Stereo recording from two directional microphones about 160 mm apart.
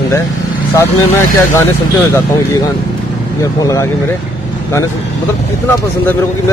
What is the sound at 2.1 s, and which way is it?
Speech, 25° left (ahead or behind).